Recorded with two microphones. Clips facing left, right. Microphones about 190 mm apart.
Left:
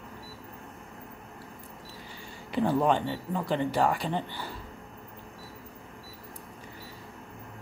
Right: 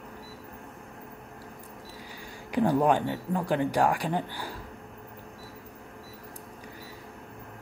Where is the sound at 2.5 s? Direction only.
15° right (ahead or behind).